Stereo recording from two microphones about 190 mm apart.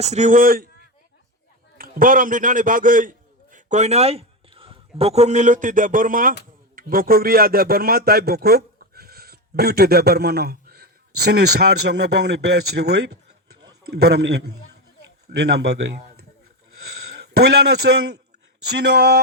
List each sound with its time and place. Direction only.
0.0 s a man's voice: 35° right (ahead or behind); by 15.8 s 60° right (ahead or behind)
17.9 s a man's voice: 55° right (ahead or behind)